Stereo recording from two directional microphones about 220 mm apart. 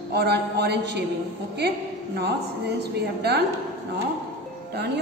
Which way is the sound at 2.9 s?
50° right (ahead or behind).